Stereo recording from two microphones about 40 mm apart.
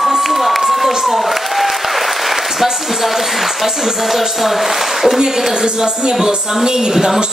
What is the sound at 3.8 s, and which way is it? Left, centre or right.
A woman's voice, centre.